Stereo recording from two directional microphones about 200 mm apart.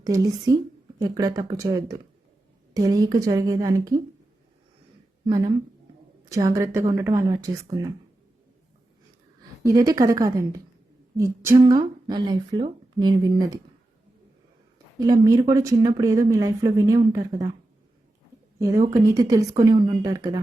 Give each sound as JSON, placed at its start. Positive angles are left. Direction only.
{"t": 0.0, "sound": "a woman's voice", "side_deg": -20}
{"t": 5.2, "sound": "a woman's voice", "side_deg": -20}
{"t": 9.6, "sound": "a woman's voice", "side_deg": -15}
{"t": 14.9, "sound": "speech", "side_deg": -20}
{"t": 18.6, "sound": "speech", "side_deg": -15}